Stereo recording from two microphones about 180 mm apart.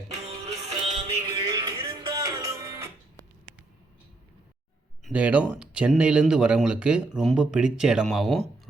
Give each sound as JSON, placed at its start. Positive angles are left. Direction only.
{"t": 0.1, "sound": "music", "side_deg": -35}
{"t": 5.0, "sound": "speech", "side_deg": -10}